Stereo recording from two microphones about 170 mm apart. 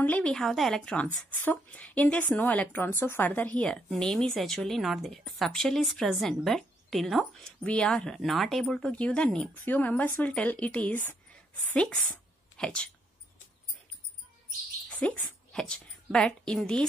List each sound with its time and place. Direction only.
0.0 s a woman's voice: 10° left (ahead or behind)
12.5 s speech: 5° left (ahead or behind)
14.9 s a woman's voice: 10° left (ahead or behind)